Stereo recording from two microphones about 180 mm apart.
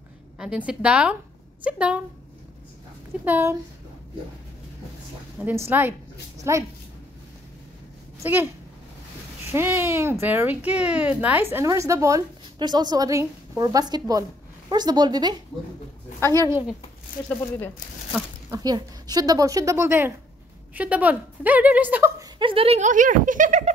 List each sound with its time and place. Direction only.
0.4 s a woman's voice: 5° right (ahead or behind)
3.3 s speech: 10° right (ahead or behind)
5.4 s speech: 10° right (ahead or behind)
8.2 s speech: 10° right (ahead or behind)
9.5 s a woman's voice: 15° right (ahead or behind)
16.2 s a woman's voice: 15° left (ahead or behind)
18.5 s a woman's voice: 20° right (ahead or behind)
22.4 s speech: 30° right (ahead or behind)